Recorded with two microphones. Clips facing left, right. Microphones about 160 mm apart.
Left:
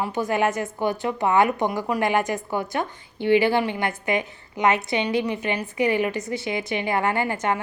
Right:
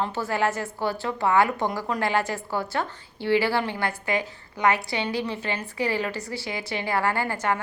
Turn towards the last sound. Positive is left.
turn(degrees=20)  # may be behind; listen again after turning